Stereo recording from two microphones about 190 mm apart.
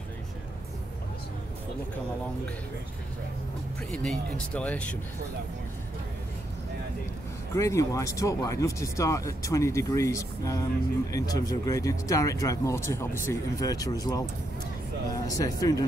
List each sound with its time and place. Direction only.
3.9 s speech: 5° left (ahead or behind)
7.5 s speech: 15° left (ahead or behind)